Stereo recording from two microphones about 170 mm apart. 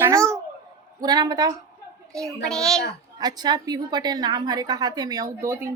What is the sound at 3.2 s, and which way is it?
A woman's voice, 25° right (ahead or behind).